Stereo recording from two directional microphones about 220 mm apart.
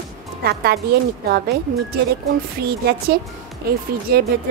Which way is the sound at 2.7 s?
45° right (ahead or behind).